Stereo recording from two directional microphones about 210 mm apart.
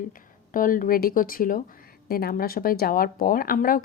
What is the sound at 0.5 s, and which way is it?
Speech, 40° left (ahead or behind).